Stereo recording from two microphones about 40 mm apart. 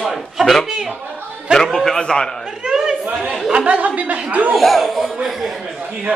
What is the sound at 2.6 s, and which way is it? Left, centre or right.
Chatter, centre.